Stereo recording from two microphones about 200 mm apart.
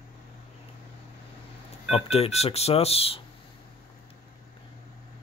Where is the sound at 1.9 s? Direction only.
30° left (ahead or behind).